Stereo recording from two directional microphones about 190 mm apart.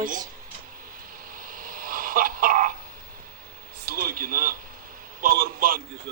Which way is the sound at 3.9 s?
50° right (ahead or behind).